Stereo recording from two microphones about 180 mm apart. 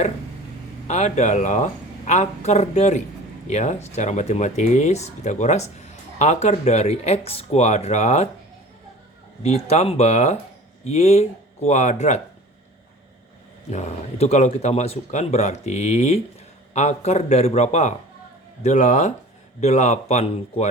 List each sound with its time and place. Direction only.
0.9 s speech: 40° left (ahead or behind)
9.4 s speech: 35° left (ahead or behind)
13.7 s speech: 40° left (ahead or behind)